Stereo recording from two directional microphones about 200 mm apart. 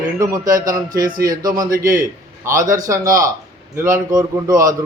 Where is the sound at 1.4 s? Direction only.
20° right (ahead or behind).